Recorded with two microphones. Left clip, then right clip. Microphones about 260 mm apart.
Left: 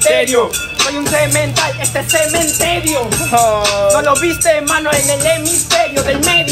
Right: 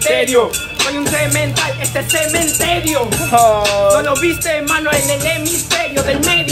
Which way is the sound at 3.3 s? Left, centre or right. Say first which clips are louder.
Right 1 dB; right.